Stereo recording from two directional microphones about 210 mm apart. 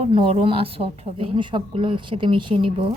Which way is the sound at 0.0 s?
25° right (ahead or behind).